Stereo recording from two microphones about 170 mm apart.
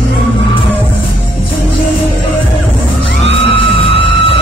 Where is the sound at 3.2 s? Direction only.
30° left (ahead or behind).